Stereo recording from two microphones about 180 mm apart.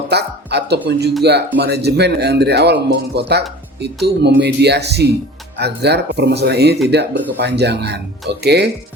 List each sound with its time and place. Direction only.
0.1 s speech: 65° right (ahead or behind)